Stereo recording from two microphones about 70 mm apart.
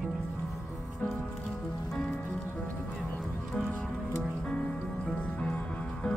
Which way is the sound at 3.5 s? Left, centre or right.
Centre.